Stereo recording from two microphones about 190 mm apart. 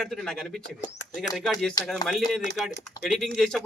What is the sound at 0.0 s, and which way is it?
A man's voice, centre (ahead or behind).